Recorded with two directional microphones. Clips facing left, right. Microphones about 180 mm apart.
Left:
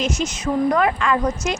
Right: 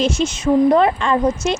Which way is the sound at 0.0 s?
30° right (ahead or behind).